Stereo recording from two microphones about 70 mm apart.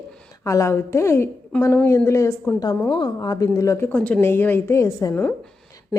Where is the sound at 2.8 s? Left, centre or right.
Left.